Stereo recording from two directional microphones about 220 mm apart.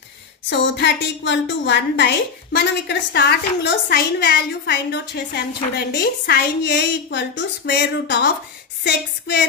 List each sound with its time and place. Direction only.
0.5 s a woman's voice: 55° left (ahead or behind)